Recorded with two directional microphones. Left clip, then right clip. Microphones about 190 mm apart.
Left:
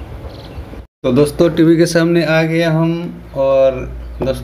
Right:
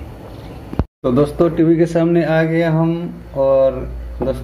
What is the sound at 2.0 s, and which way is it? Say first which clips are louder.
Speech: left 2 dB; 35° left (ahead or behind).